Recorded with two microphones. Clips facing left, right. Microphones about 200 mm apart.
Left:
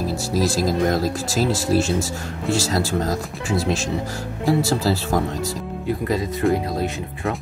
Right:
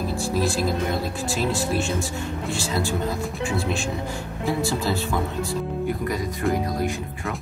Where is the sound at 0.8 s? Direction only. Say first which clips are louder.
Left 5 dB; 90° left.